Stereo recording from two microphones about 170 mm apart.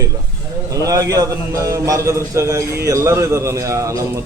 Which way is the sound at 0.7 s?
20° right (ahead or behind).